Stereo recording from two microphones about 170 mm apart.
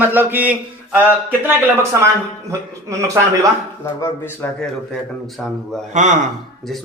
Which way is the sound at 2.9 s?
20° right (ahead or behind).